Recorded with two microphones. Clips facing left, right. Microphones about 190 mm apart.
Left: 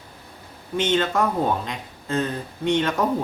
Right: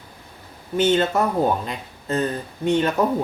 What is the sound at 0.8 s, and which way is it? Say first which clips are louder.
Speech: right 3 dB; 5° right (ahead or behind).